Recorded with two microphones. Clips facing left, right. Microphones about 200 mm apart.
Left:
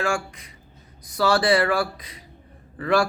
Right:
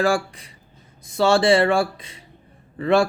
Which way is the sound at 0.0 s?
35° right (ahead or behind).